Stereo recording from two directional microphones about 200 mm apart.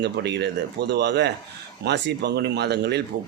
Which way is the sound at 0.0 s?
55° right (ahead or behind).